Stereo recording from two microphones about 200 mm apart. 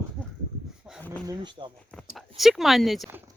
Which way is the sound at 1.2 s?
20° right (ahead or behind).